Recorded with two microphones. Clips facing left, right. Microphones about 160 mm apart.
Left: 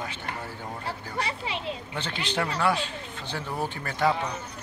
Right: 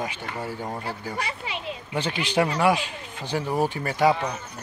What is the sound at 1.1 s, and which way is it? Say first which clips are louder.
Speech: even; 30° left (ahead or behind).